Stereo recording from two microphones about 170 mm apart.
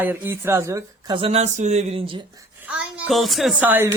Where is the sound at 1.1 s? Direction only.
35° right (ahead or behind).